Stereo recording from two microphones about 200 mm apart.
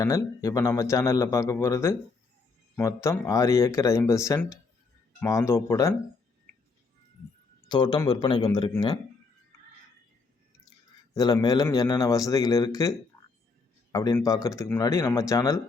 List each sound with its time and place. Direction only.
0.0 s a man's voice: 15° left (ahead or behind)
7.7 s speech: 20° left (ahead or behind)
11.1 s a man's voice: 20° left (ahead or behind)
13.1 s a sound: 15° left (ahead or behind)
13.9 s a man's voice: 20° left (ahead or behind)